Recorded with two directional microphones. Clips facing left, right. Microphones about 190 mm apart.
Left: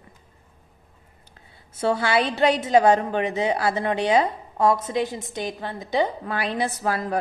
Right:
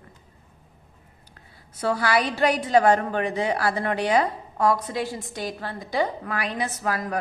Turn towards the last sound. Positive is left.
turn(degrees=30)  # may be behind; listen again after turning